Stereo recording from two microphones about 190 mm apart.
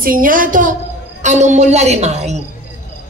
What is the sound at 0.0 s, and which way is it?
A woman's voice, 45° right (ahead or behind).